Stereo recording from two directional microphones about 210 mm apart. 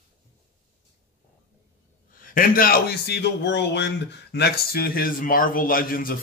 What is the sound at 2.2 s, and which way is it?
A man's voice, 40° left (ahead or behind).